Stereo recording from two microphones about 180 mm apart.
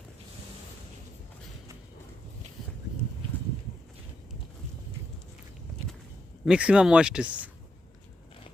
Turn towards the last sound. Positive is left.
turn(degrees=-5)  # may be behind; listen again after turning